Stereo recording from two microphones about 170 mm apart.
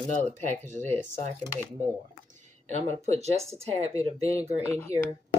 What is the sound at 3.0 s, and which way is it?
Speech, 40° right (ahead or behind).